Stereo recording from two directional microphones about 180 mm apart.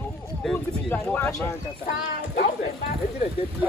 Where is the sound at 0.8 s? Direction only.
5° left (ahead or behind).